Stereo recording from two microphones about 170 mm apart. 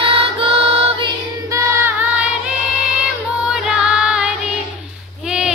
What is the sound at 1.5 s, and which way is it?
Choir, 15° right (ahead or behind).